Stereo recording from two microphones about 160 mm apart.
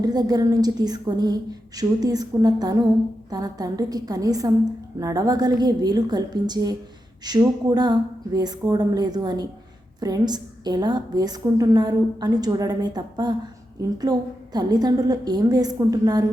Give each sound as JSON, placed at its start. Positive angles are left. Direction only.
{"t": 0.0, "sound": "a woman's voice", "side_deg": -25}